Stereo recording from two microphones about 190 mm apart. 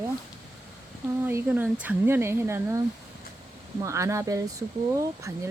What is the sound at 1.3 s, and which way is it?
Speech, 10° right (ahead or behind).